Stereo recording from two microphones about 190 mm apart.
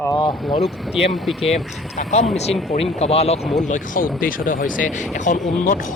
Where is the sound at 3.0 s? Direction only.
35° left (ahead or behind).